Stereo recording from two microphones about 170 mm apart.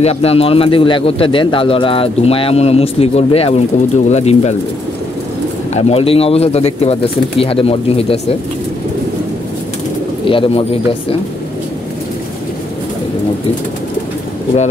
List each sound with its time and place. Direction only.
0.0 s speech: 35° left (ahead or behind)
5.8 s speech: 35° left (ahead or behind)
10.2 s speech: 30° left (ahead or behind)